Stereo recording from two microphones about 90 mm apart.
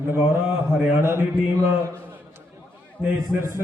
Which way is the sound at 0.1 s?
25° right (ahead or behind).